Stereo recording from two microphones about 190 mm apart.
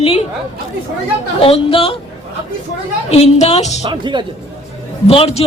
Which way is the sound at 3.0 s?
35° left (ahead or behind).